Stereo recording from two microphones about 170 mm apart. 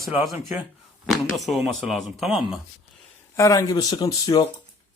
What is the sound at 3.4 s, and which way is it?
Speech, 20° left (ahead or behind).